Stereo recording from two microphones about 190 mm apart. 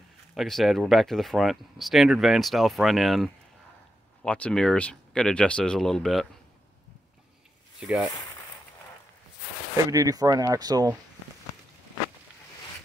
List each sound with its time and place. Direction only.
0.3 s speech: centre (ahead or behind)
7.8 s speech: 5° right (ahead or behind)
9.8 s speech: 20° right (ahead or behind)